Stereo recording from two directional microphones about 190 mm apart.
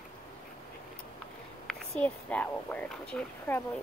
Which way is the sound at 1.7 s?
5° left (ahead or behind).